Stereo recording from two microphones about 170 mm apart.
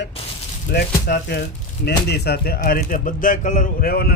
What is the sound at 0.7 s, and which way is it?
A man's voice, 70° left (ahead or behind).